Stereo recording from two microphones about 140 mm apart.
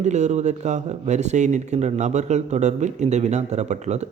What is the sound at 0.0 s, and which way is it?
Speech, 55° right (ahead or behind).